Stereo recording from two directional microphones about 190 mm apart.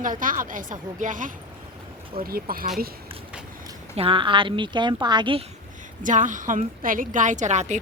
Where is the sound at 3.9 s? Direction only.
30° right (ahead or behind).